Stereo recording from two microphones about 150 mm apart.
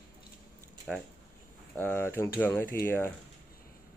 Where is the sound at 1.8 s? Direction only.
15° left (ahead or behind).